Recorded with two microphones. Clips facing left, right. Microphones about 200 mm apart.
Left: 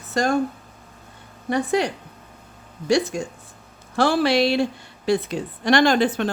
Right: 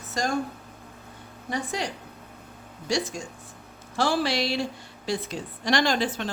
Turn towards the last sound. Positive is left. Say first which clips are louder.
# left 7 dB
turn(degrees=60)  # may be behind; listen again after turning